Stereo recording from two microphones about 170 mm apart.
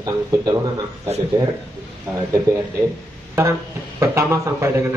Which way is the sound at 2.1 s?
15° right (ahead or behind).